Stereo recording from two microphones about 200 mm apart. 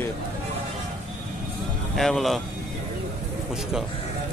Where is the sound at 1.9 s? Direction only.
Centre (ahead or behind).